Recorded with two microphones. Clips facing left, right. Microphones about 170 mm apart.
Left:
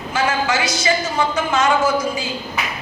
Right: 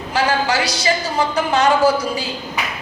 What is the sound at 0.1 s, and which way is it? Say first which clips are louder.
A woman's voice: right 1 dB; 35° right (ahead or behind).